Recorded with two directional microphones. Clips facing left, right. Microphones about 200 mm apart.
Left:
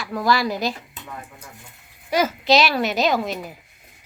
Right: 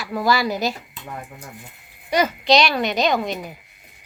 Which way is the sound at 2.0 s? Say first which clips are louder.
Right 1 dB; 5° left (ahead or behind).